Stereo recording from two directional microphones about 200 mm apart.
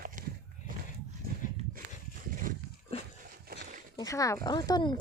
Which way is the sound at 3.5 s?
45° right (ahead or behind).